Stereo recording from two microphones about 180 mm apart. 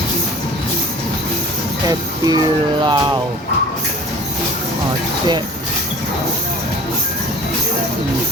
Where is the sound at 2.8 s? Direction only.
25° right (ahead or behind).